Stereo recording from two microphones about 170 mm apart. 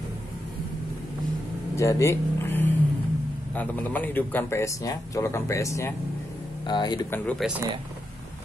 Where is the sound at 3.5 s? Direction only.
10° left (ahead or behind); by 7.0 s 25° left (ahead or behind).